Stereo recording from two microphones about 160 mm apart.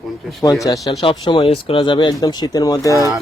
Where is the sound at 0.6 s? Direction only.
20° left (ahead or behind).